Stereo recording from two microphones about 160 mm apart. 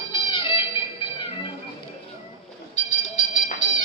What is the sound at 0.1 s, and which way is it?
Music, 30° left (ahead or behind).